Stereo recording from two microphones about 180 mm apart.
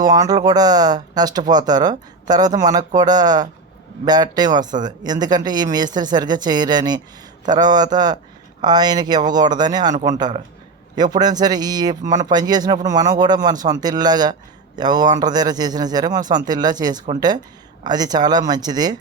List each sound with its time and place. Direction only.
0.0 s speech: 20° right (ahead or behind)